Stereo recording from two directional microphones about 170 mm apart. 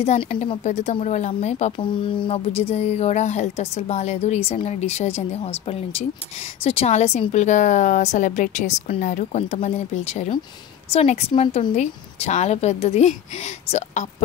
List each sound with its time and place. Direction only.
0.0 s speech: 40° left (ahead or behind)
1.8 s speech: 30° left (ahead or behind)